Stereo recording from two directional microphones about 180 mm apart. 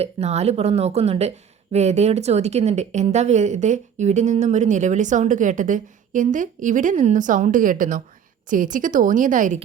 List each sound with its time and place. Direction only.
0.0 s a woman's voice: 35° right (ahead or behind)